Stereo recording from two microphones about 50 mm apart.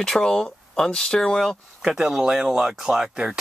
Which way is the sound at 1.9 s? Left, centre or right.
Centre.